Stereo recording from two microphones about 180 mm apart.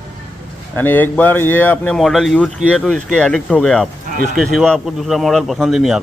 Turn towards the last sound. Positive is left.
turn(degrees=0)  # may be behind; listen again after turning